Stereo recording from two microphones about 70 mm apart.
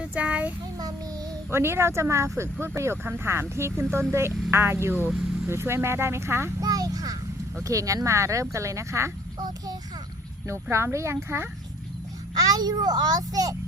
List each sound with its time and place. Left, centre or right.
0.0 s child singing: centre
1.5 s speech: right
6.6 s a sound: right
7.6 s speech: right
10.4 s speech: right
12.3 s a child's voice: right